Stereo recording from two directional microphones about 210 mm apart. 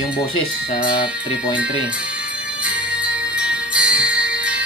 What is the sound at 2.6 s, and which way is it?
Music, 5° right (ahead or behind).